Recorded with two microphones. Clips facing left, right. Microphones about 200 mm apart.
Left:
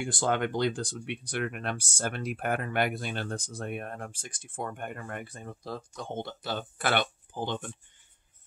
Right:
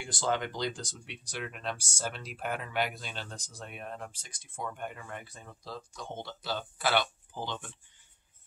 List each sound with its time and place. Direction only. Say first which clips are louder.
0.0 s speech: left 4 dB; 55° left (ahead or behind)